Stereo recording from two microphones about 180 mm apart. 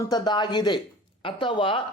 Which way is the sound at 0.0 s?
25° left (ahead or behind).